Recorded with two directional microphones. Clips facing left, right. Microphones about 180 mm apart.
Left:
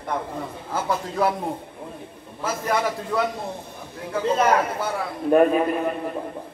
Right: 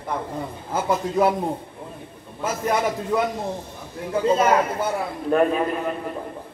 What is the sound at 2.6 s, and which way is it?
A man's voice, 20° right (ahead or behind).